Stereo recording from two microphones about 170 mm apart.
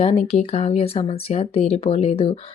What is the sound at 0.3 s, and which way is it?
Speech, 40° left (ahead or behind).